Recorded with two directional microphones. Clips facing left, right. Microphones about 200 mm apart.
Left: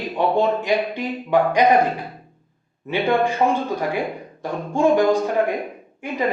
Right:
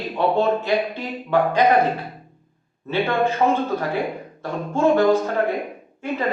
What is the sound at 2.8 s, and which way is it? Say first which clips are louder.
Speech: left 1 dB; 15° left (ahead or behind).